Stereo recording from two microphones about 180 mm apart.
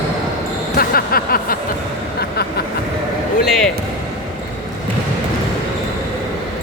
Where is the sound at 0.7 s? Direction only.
55° left (ahead or behind).